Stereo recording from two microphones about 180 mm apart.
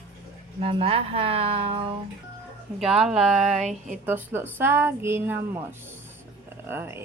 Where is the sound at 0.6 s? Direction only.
30° right (ahead or behind).